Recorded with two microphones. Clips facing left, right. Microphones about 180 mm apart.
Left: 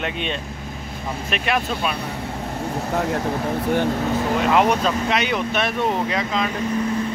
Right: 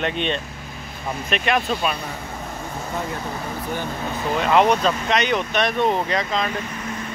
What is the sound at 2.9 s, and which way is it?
Speech, 75° left (ahead or behind).